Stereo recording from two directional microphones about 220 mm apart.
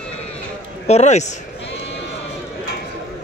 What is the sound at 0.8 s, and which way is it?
Speech, 30° left (ahead or behind).